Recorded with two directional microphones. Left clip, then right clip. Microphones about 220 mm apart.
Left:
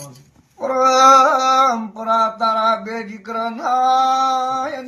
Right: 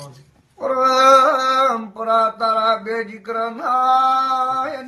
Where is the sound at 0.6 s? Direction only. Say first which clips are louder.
Left 2 dB; 25° right (ahead or behind).